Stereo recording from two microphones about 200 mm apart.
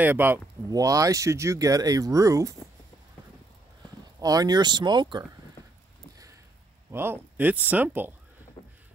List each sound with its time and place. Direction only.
0.0 s speech: 10° right (ahead or behind)
4.2 s speech: 20° right (ahead or behind)
6.9 s speech: 10° right (ahead or behind)
8.6 s boat: 25° left (ahead or behind)